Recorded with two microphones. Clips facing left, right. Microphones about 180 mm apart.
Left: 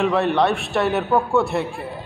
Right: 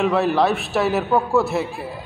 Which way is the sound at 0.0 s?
Centre (ahead or behind).